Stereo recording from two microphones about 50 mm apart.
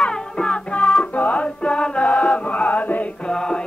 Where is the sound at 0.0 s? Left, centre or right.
Centre.